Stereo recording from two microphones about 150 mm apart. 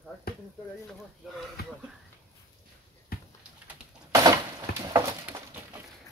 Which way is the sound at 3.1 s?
90° left.